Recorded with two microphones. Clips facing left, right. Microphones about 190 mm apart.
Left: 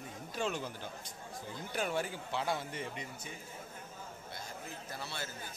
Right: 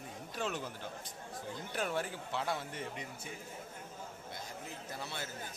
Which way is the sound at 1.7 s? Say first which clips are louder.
Left 1 dB; centre (ahead or behind).